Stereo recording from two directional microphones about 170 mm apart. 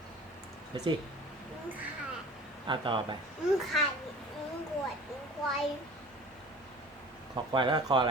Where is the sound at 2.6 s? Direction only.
30° right (ahead or behind).